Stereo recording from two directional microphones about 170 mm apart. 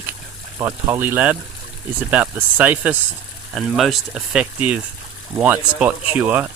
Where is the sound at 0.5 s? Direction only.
15° right (ahead or behind).